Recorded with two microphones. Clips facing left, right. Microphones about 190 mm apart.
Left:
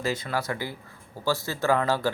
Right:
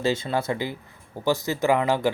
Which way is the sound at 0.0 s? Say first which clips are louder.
Right 4 dB; 25° right (ahead or behind).